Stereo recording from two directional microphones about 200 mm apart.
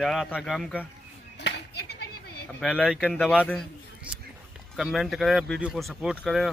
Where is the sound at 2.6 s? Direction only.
Centre (ahead or behind).